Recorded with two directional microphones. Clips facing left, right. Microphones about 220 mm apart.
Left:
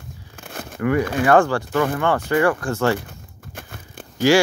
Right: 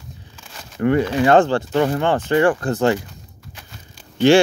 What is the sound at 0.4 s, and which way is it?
Crumpling, 55° left (ahead or behind).